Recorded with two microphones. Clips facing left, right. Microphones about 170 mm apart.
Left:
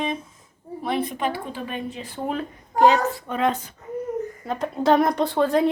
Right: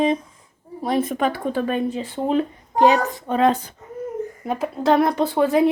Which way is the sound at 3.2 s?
35° right (ahead or behind).